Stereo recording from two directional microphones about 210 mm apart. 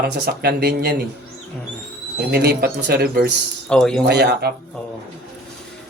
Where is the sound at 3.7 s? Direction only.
5° left (ahead or behind).